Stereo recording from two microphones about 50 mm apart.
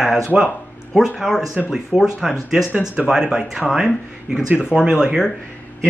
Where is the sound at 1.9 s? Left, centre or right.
Right.